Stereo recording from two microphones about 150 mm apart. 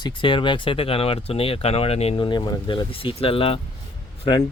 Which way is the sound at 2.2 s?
30° left (ahead or behind).